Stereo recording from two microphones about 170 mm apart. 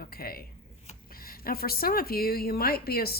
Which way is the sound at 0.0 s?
60° left (ahead or behind).